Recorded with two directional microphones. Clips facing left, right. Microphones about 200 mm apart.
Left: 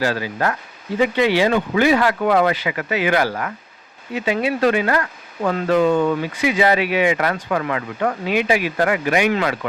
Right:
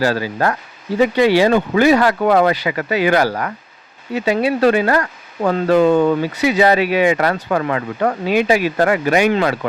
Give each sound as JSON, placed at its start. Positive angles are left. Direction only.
{"t": 0.0, "sound": "speech", "side_deg": -40}